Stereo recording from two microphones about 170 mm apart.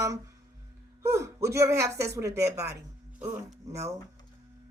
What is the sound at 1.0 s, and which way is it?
A woman's voice, 15° right (ahead or behind).